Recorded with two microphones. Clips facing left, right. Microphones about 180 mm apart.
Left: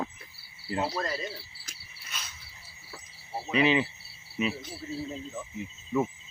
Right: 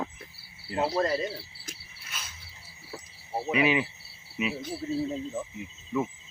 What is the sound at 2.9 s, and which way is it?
Cricket, 25° right (ahead or behind).